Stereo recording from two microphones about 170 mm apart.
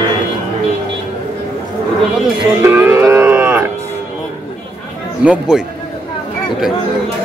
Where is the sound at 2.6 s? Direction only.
15° right (ahead or behind).